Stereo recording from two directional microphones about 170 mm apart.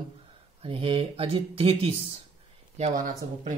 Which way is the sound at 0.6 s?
35° right (ahead or behind).